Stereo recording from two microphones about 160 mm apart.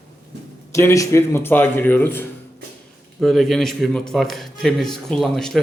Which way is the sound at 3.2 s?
Centre (ahead or behind).